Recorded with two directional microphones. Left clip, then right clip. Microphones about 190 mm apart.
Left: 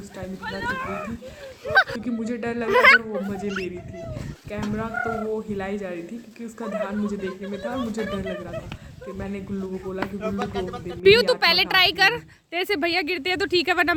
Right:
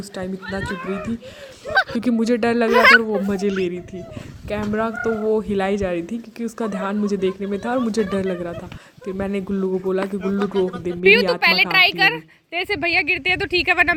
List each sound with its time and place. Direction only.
1.7 s honk: 10° left (ahead or behind)
2.0 s speech: 45° right (ahead or behind)
2.6 s speech: centre (ahead or behind)
3.2 s speech: 45° right (ahead or behind)
10.2 s a woman's voice: 20° left (ahead or behind)